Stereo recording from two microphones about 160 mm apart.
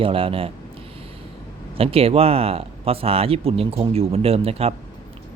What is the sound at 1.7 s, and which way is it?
Speech, 35° right (ahead or behind).